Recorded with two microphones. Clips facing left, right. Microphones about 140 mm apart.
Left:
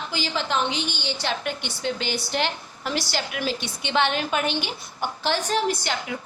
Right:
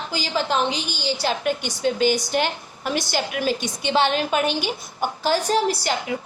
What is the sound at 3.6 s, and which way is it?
Speech, 40° right (ahead or behind).